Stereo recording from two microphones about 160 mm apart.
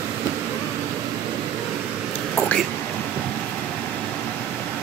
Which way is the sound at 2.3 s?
10° left (ahead or behind).